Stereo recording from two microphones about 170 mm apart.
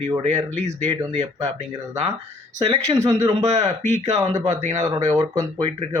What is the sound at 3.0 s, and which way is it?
Speech, 20° right (ahead or behind).